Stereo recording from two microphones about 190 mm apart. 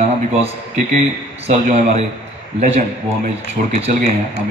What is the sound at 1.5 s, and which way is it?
A man's voice, 35° right (ahead or behind).